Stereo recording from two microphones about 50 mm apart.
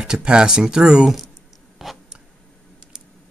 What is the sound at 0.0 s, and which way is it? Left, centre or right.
Speech, centre.